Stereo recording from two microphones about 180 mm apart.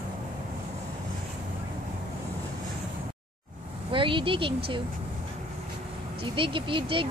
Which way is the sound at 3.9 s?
30° right (ahead or behind).